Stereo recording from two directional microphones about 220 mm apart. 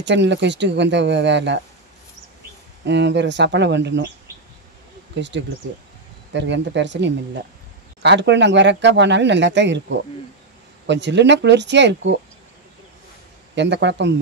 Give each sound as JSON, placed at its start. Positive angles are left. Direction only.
{"t": 0.0, "sound": "speech", "side_deg": -55}
{"t": 2.8, "sound": "speech", "side_deg": -50}
{"t": 5.1, "sound": "speech", "side_deg": -55}
{"t": 13.6, "sound": "speech", "side_deg": -50}